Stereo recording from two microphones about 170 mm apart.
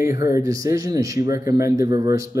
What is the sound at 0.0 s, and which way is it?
Speech, 20° right (ahead or behind).